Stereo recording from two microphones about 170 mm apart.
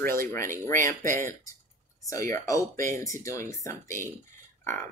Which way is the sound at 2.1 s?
20° left (ahead or behind).